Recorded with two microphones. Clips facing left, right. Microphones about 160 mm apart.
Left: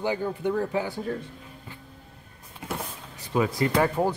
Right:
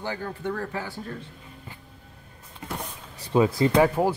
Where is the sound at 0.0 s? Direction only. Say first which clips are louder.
Left 4 dB; 15° left (ahead or behind).